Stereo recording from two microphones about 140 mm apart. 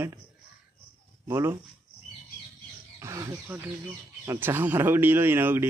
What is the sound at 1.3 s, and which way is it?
Speech, 15° right (ahead or behind).